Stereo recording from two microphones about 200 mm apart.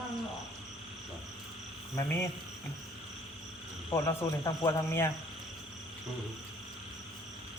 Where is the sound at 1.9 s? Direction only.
15° left (ahead or behind).